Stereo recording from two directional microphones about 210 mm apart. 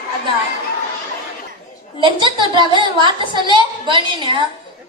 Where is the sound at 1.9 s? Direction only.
20° right (ahead or behind).